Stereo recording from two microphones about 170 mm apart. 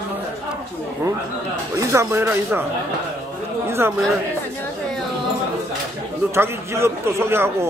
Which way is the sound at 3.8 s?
15° right (ahead or behind).